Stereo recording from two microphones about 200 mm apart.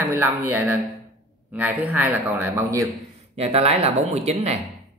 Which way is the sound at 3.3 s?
30° right (ahead or behind).